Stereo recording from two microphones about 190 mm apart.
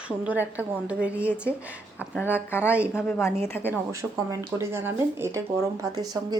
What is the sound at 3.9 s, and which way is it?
Speech, 15° right (ahead or behind).